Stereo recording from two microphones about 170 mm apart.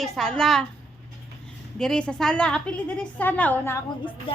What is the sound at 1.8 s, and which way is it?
A woman's voice, 5° left (ahead or behind).